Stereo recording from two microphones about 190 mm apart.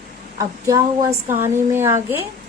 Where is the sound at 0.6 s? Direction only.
15° right (ahead or behind).